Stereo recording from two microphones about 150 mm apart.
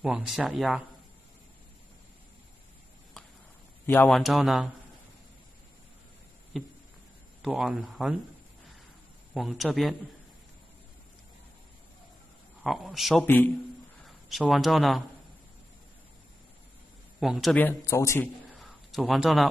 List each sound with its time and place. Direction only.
0.0 s speech: 5° right (ahead or behind)
3.8 s a man's voice: 15° left (ahead or behind)
4.1 s speech: centre (ahead or behind)
6.5 s a sound: 5° right (ahead or behind)
7.4 s speech: centre (ahead or behind)
9.3 s speech: centre (ahead or behind)
12.6 s speech: centre (ahead or behind)
17.2 s speech: centre (ahead or behind)
17.6 s speech: 15° left (ahead or behind)
18.6 s a sound: centre (ahead or behind)